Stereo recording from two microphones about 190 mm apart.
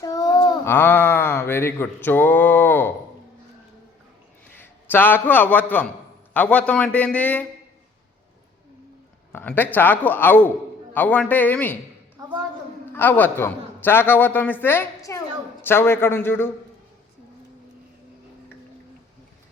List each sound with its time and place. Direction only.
0.0 s a sound: 20° left (ahead or behind)
0.7 s speech: 10° left (ahead or behind)
4.5 s a man's voice: 10° left (ahead or behind)
9.3 s a man's voice: 10° left (ahead or behind)
12.2 s a sound: 20° right (ahead or behind)
12.9 s a man's voice: 10° left (ahead or behind)